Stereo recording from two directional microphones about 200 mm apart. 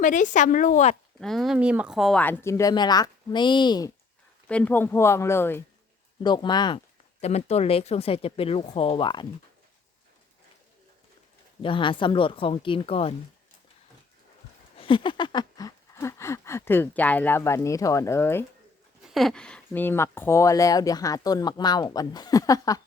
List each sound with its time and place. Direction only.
0.0 s a woman's voice: 40° left (ahead or behind)
1.2 s speech: centre (ahead or behind); by 3.9 s 20° left (ahead or behind)
4.4 s speech: 5° left (ahead or behind)
6.2 s speech: 20° left (ahead or behind)
11.6 s speech: 25° left (ahead or behind)
14.8 s speech: 25° left (ahead or behind)
19.0 s speech: centre (ahead or behind); by 22.8 s 15° left (ahead or behind)